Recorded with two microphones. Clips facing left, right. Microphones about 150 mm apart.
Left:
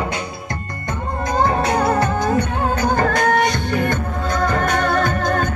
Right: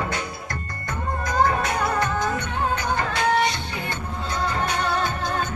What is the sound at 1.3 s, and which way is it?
Music, 30° left (ahead or behind).